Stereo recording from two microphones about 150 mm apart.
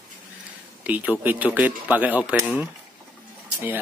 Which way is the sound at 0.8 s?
10° right (ahead or behind).